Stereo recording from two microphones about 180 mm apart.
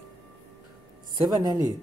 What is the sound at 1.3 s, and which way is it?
Speech, 20° right (ahead or behind).